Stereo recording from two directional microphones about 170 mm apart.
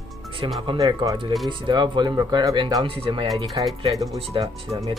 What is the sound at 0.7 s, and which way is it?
Speech, 25° right (ahead or behind).